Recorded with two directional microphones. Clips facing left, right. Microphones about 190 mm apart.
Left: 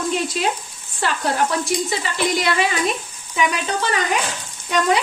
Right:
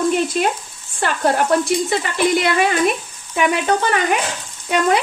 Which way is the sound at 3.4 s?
55° right (ahead or behind).